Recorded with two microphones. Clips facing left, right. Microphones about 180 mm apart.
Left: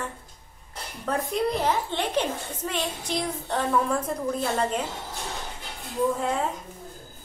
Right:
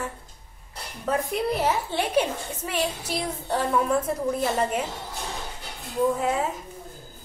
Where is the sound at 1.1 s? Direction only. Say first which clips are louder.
Right 1 dB; 5° right (ahead or behind).